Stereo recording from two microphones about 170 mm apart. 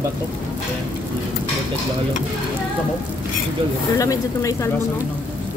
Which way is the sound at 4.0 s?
20° left (ahead or behind).